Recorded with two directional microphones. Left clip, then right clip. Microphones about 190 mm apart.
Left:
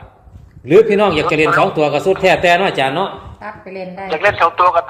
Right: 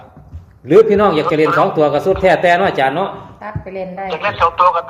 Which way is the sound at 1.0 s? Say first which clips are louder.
Even; 35° left (ahead or behind).